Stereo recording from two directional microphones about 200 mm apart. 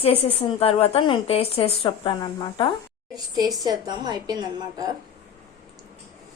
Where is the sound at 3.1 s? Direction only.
20° right (ahead or behind).